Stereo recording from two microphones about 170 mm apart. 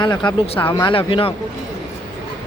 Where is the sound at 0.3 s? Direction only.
25° left (ahead or behind).